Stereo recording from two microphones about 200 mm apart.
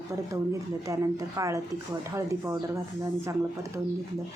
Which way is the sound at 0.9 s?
15° right (ahead or behind).